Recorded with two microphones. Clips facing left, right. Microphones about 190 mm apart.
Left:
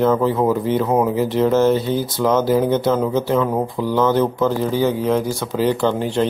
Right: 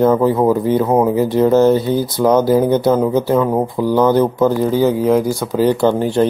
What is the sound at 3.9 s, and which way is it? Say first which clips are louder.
Speech: right 4 dB; 40° right (ahead or behind).